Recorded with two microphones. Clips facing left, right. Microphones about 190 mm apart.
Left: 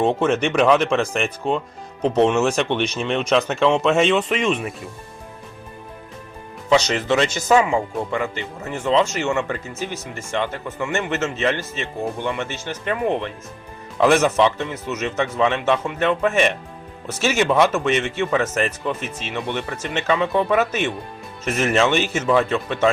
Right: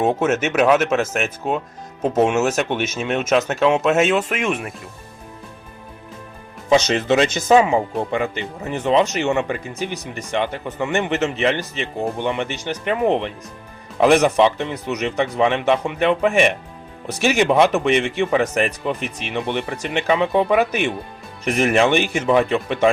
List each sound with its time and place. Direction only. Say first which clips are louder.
0.0 s speech: even; 5° right (ahead or behind)
6.7 s speech: right 2 dB; 20° right (ahead or behind)